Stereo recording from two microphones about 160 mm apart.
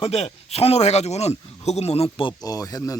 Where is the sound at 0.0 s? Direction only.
40° left (ahead or behind).